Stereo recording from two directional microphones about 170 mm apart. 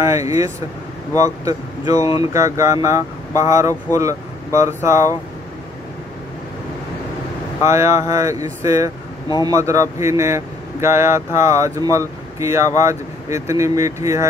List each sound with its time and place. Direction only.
0.0 s speech: 20° right (ahead or behind)
7.6 s speech: 15° right (ahead or behind)